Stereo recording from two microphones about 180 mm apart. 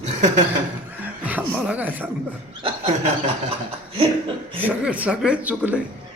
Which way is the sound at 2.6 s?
30° right (ahead or behind).